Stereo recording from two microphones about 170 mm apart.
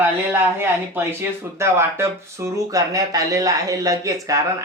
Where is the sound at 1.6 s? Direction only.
15° right (ahead or behind).